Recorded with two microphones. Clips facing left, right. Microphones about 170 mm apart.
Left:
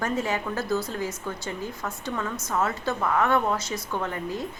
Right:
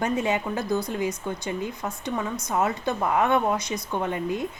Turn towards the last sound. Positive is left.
turn(degrees=-20)  # may be behind; listen again after turning